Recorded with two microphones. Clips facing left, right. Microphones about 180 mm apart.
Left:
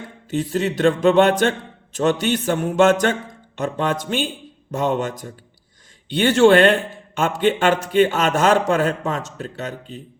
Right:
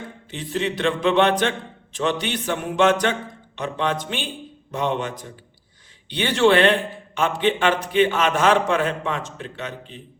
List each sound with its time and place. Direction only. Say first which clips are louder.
0.3 s a man's voice: left 5 dB; 40° left (ahead or behind)